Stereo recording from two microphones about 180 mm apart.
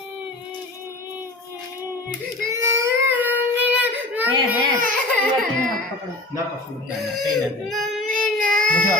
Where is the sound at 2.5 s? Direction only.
15° right (ahead or behind).